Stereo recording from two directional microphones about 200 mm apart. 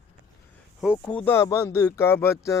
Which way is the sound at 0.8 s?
Centre (ahead or behind).